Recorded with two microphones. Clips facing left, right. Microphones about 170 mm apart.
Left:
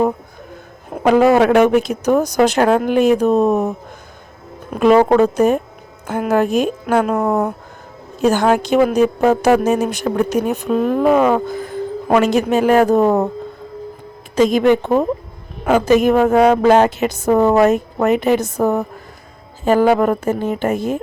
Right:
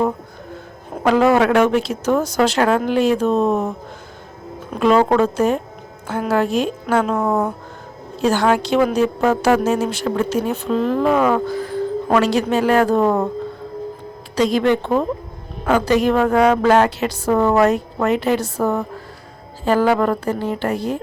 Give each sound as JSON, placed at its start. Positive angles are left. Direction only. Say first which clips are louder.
{"t": 1.0, "sound": "speech", "louder": "left 3 dB", "side_deg": 15}
{"t": 14.3, "sound": "speech", "louder": "left 4 dB", "side_deg": 20}